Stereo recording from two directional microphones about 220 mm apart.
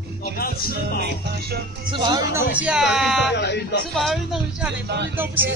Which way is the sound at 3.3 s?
50° left (ahead or behind).